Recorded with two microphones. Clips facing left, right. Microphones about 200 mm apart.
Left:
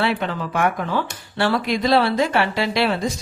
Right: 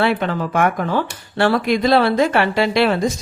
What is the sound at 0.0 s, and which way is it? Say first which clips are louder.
Speech: right 4 dB; 50° right (ahead or behind).